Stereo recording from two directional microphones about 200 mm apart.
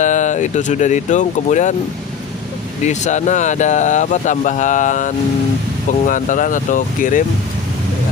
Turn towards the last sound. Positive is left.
turn(degrees=40)  # may be behind; listen again after turning